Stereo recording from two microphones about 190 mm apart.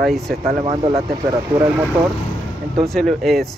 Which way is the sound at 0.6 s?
25° right (ahead or behind).